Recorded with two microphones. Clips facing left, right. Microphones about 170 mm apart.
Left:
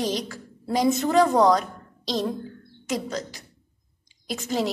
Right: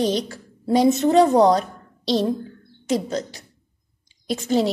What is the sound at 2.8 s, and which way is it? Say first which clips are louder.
A woman's voice: right 5 dB; 30° right (ahead or behind).